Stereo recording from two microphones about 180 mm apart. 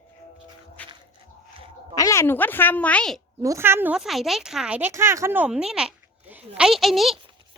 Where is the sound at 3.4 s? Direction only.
15° right (ahead or behind).